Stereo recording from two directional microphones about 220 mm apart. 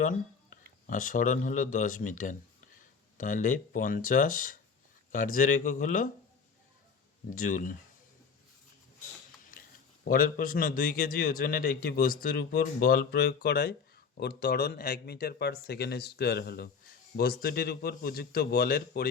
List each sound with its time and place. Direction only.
0.0 s a sound: 35° left (ahead or behind)
0.9 s speech: 40° left (ahead or behind)
7.3 s speech: 40° left (ahead or behind)
10.0 s speech: 40° left (ahead or behind)